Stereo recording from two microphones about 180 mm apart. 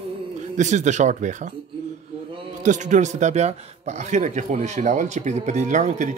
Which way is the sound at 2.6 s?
45° right (ahead or behind).